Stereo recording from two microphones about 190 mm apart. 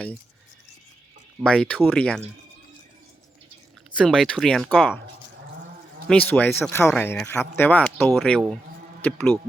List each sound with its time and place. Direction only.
1.5 s speech: 5° left (ahead or behind)
3.9 s speech: 5° left (ahead or behind)
6.1 s speech: 5° left (ahead or behind)